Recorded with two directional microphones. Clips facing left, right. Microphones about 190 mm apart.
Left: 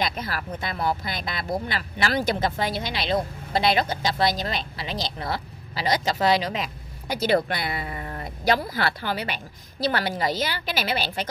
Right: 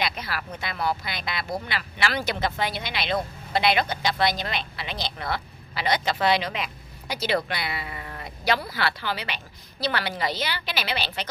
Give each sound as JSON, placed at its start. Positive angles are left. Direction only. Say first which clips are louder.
{"t": 0.0, "sound": "a woman's voice", "louder": "left 2 dB", "side_deg": 45}